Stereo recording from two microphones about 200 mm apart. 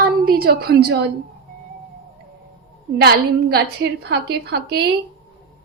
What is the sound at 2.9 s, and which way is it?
A woman's voice, 55° right (ahead or behind).